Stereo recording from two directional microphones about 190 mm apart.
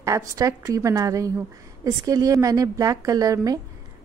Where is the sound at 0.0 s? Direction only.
15° right (ahead or behind).